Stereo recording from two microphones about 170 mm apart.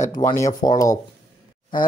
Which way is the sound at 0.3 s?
20° left (ahead or behind).